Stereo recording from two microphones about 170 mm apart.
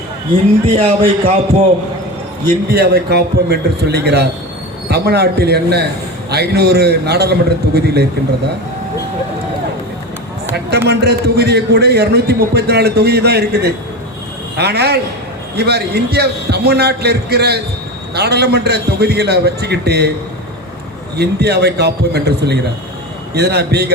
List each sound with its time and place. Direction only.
0.6 s speech: 35° right (ahead or behind)
2.6 s a man's voice: 70° right (ahead or behind)
10.5 s a man's voice: 75° right (ahead or behind)
21.2 s a man's voice: 75° right (ahead or behind)